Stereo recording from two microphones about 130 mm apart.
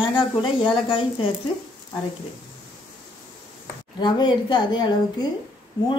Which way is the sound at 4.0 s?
35° left (ahead or behind).